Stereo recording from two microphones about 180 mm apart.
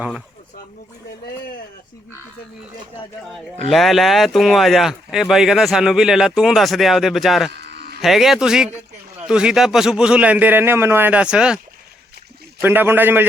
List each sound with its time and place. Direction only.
3.2 s speech: centre (ahead or behind)
7.5 s cattle: 65° right (ahead or behind)
8.0 s speech: centre (ahead or behind)
12.6 s a man's voice: 10° right (ahead or behind)